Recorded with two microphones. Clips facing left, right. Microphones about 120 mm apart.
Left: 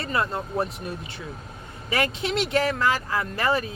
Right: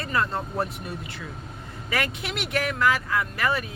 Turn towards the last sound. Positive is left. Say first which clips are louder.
# left 2 dB
turn(degrees=30)  # may be behind; listen again after turning